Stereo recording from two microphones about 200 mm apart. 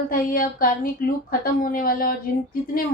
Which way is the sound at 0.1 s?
45° left (ahead or behind).